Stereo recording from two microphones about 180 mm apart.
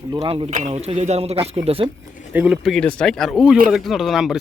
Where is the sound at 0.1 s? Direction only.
25° right (ahead or behind).